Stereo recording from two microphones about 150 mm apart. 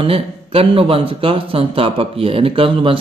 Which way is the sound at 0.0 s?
40° right (ahead or behind).